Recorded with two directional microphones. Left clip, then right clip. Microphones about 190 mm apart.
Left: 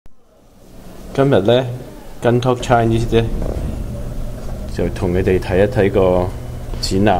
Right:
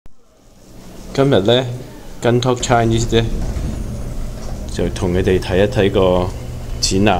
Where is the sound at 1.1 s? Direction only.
5° right (ahead or behind).